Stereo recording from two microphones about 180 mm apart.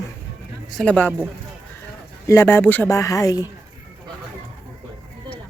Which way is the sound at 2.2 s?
15° left (ahead or behind).